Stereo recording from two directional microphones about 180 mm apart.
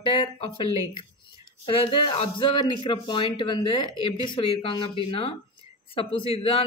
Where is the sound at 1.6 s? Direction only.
30° left (ahead or behind).